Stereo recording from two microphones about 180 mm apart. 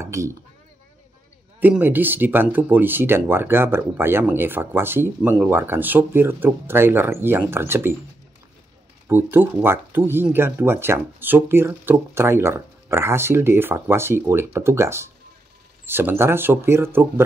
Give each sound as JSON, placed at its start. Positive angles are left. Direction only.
{"t": 0.0, "sound": "chink", "side_deg": -15}
{"t": 1.6, "sound": "speech", "side_deg": -10}
{"t": 9.0, "sound": "speech", "side_deg": -10}